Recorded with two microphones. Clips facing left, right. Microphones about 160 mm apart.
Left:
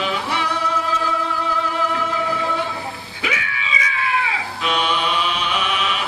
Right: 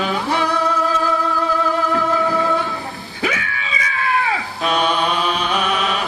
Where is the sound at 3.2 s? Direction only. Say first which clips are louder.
Right 4 dB; 40° right (ahead or behind).